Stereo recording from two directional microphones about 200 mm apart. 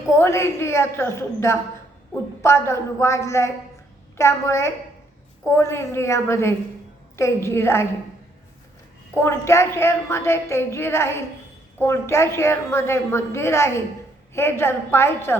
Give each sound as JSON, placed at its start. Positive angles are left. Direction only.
{"t": 0.2, "sound": "a woman's voice", "side_deg": 15}
{"t": 9.2, "sound": "a woman's voice", "side_deg": 15}